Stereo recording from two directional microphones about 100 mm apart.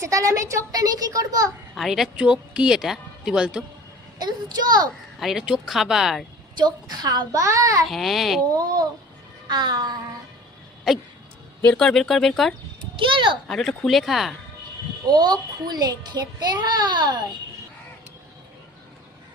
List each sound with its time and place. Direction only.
0.0 s a child's voice: 35° right (ahead or behind)
1.7 s speech: centre (ahead or behind)
4.2 s a child's voice: 40° right (ahead or behind)
5.2 s speech: 5° right (ahead or behind)
6.6 s a child's voice: 45° right (ahead or behind)
7.4 s a child's voice: 30° right (ahead or behind)
7.9 s speech: centre (ahead or behind)
9.5 s a child's voice: 45° right (ahead or behind)
10.9 s speech: 5° right (ahead or behind)
11.6 s speech: 5° left (ahead or behind)
13.0 s a child's voice: 55° right (ahead or behind)
13.5 s speech: 5° left (ahead or behind)
15.0 s a child's voice: 40° right (ahead or behind)